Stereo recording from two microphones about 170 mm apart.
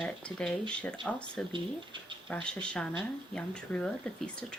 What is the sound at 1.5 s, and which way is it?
Speech, 30° right (ahead or behind).